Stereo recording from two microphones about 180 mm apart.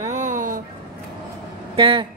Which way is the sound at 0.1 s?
45° right (ahead or behind).